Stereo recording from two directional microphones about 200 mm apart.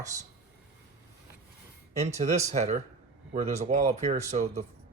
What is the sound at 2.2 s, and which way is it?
Speech, 35° right (ahead or behind).